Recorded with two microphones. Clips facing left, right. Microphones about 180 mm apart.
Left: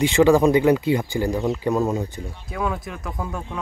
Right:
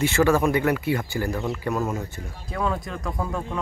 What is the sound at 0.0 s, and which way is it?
Speech, 15° left (ahead or behind).